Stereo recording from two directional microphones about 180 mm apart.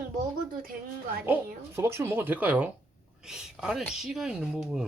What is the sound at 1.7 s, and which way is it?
Speech, 15° right (ahead or behind).